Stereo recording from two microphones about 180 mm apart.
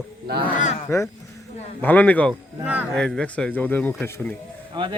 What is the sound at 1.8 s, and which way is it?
A man's voice, 10° left (ahead or behind).